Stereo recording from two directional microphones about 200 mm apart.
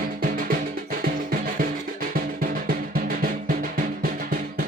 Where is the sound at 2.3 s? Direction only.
45° right (ahead or behind).